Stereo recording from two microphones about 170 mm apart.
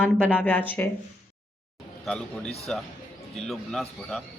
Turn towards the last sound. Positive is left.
turn(degrees=5)  # may be behind; listen again after turning